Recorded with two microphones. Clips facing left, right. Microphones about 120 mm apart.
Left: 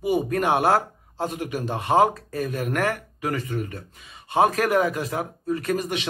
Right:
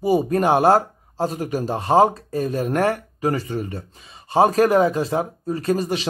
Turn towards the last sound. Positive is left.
turn(degrees=-30)  # may be behind; listen again after turning